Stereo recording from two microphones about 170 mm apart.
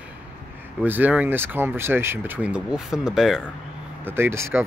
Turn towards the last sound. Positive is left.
turn(degrees=-15)  # may be behind; listen again after turning